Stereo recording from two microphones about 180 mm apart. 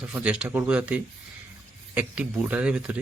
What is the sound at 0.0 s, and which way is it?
Speech, 5° right (ahead or behind).